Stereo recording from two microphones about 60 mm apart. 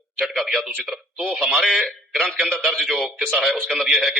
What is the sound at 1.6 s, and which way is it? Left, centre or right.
A man's voice, centre.